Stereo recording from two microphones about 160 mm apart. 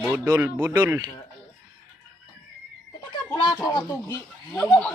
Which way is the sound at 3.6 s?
25° left (ahead or behind).